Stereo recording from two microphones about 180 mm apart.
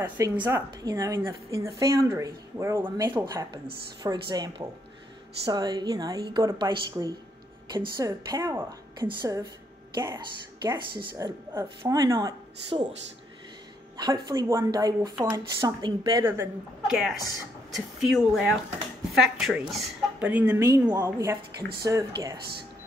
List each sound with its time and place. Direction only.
0.0 s a woman's voice: 10° right (ahead or behind)
13.9 s speech: 25° right (ahead or behind)
16.9 s a woman's voice: centre (ahead or behind)
20.4 s a woman's voice: 20° right (ahead or behind)